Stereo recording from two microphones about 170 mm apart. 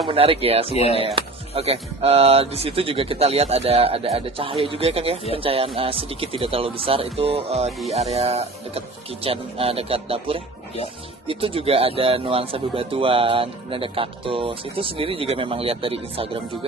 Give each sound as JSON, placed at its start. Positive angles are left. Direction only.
{"t": 0.1, "sound": "speech", "side_deg": -35}
{"t": 0.7, "sound": "speech", "side_deg": 35}
{"t": 0.9, "sound": "speech", "side_deg": -35}